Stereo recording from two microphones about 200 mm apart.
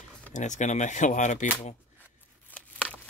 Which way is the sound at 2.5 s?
5° right (ahead or behind).